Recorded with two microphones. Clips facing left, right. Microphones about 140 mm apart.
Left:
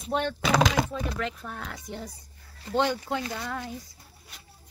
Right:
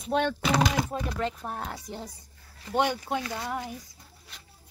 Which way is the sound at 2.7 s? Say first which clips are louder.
Even; 15° right (ahead or behind).